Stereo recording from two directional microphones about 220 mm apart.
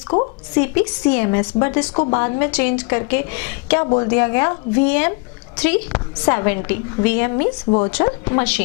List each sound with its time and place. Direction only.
0.6 s speech: 15° left (ahead or behind)
3.8 s a woman's voice: 25° left (ahead or behind)